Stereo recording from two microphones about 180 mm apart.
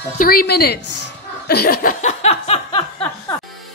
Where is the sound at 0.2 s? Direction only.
55° left (ahead or behind).